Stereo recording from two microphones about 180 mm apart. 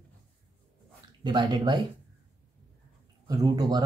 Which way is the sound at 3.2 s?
20° right (ahead or behind).